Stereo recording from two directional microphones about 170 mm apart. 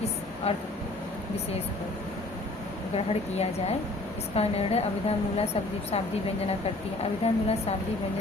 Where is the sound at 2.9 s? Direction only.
35° left (ahead or behind).